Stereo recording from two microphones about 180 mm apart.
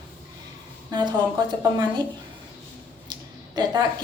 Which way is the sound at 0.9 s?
25° right (ahead or behind).